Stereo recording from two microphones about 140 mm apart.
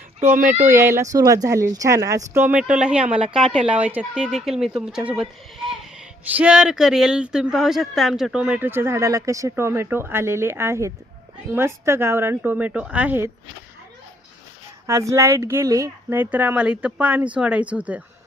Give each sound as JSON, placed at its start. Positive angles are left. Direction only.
{"t": 0.3, "sound": "speech", "side_deg": -70}
{"t": 0.6, "sound": "speech", "side_deg": -20}
{"t": 14.8, "sound": "speech", "side_deg": -20}